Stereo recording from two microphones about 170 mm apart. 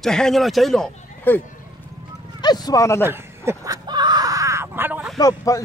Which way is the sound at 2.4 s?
25° left (ahead or behind).